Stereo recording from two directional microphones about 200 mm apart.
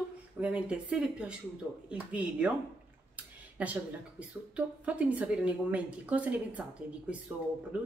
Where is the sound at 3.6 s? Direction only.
5° right (ahead or behind).